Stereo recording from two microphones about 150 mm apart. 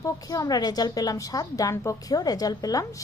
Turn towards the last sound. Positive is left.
turn(degrees=25)  # may be behind; listen again after turning